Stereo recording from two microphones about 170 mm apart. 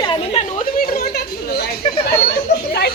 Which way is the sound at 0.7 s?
60° left (ahead or behind).